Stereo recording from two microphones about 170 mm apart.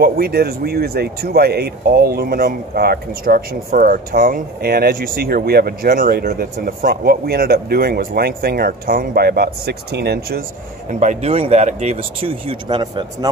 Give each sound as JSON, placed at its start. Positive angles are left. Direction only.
{"t": 0.0, "sound": "speech", "side_deg": -60}
{"t": 10.9, "sound": "speech", "side_deg": -45}